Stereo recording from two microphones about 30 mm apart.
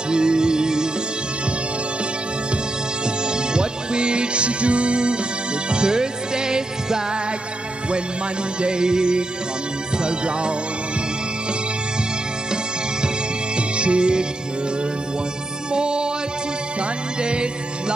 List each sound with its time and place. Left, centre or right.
0.1 s music: right
3.3 s music: right
8.5 s music: right
13.6 s music: right
15.7 s music: right
17.2 s music: right